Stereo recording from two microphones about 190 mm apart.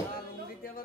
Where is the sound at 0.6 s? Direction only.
50° left (ahead or behind).